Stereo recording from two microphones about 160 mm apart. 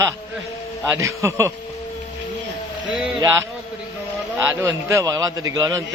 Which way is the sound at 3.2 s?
20° right (ahead or behind).